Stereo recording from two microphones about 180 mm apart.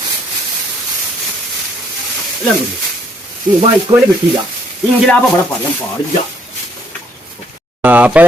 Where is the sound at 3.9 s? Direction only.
25° right (ahead or behind).